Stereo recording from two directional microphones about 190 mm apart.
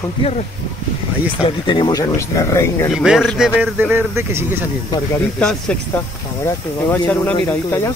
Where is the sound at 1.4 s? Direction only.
25° left (ahead or behind).